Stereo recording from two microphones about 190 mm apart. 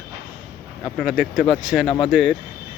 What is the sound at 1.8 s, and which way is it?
Speech, 25° left (ahead or behind).